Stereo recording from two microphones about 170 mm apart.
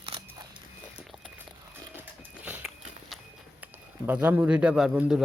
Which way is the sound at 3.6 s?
10° right (ahead or behind).